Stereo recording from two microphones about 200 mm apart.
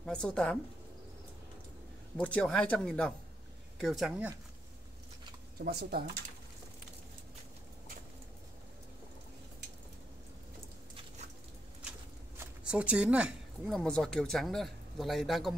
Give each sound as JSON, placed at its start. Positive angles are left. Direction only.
{"t": 0.0, "sound": "speech", "side_deg": 5}
{"t": 2.1, "sound": "speech", "side_deg": 5}
{"t": 5.6, "sound": "speech", "side_deg": -50}
{"t": 12.4, "sound": "speech", "side_deg": -5}